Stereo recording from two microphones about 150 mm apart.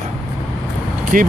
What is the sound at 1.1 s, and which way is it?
Speech, 65° right (ahead or behind).